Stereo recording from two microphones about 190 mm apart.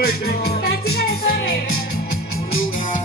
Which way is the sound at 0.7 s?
55° left (ahead or behind).